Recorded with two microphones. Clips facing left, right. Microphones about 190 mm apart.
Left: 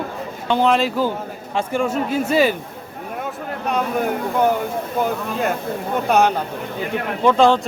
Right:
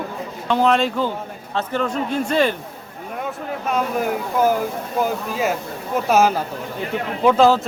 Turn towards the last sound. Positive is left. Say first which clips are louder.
# even
turn(degrees=-5)  # may be behind; listen again after turning